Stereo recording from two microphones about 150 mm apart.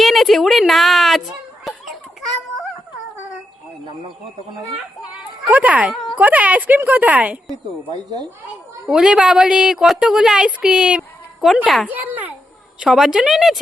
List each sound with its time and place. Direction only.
0.0 s a woman's voice: centre (ahead or behind)
1.6 s a sound: centre (ahead or behind)
5.1 s speech: 10° right (ahead or behind)
7.9 s speech: 30° right (ahead or behind)
8.9 s a woman's voice: 5° right (ahead or behind)
11.9 s a woman's voice: 10° right (ahead or behind)